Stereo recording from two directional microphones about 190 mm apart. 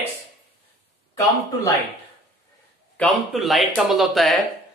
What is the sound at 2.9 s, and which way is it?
Speech, 5° left (ahead or behind).